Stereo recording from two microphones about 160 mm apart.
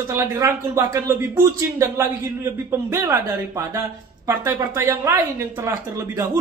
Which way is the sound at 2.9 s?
20° right (ahead or behind).